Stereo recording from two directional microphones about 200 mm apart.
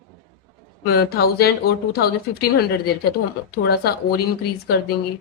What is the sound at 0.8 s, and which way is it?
Speech, 50° left (ahead or behind).